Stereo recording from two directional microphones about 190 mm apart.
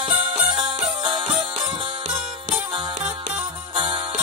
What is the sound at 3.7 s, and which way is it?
Music, 25° right (ahead or behind).